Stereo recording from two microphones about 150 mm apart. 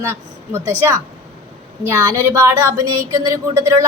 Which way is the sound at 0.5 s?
20° right (ahead or behind).